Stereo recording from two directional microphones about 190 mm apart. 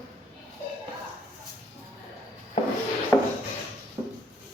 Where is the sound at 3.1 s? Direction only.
15° left (ahead or behind).